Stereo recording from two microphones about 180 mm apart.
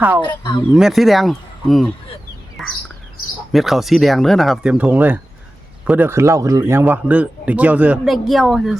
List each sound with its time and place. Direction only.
0.2 s speech: 25° left (ahead or behind)
0.7 s a man's voice: centre (ahead or behind)